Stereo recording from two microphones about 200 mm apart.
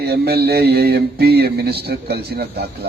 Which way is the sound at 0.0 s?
55° right (ahead or behind).